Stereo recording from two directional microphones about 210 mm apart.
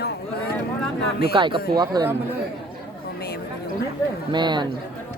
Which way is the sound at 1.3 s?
25° right (ahead or behind).